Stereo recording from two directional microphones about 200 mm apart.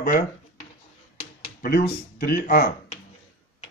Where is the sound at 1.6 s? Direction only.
50° left (ahead or behind).